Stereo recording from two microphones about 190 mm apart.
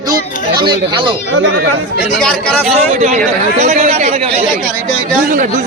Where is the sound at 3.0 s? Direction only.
40° right (ahead or behind).